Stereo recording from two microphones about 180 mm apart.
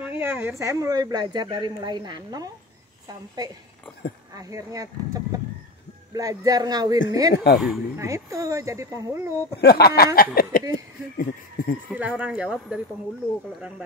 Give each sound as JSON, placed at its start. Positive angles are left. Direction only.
{"t": 0.0, "sound": "speech", "side_deg": -10}
{"t": 4.3, "sound": "speech", "side_deg": -20}
{"t": 7.5, "sound": "speech", "side_deg": 0}
{"t": 8.0, "sound": "speech", "side_deg": -15}
{"t": 9.6, "sound": "a sound", "side_deg": 60}
{"t": 11.1, "sound": "speech", "side_deg": 50}
{"t": 11.9, "sound": "speech", "side_deg": -10}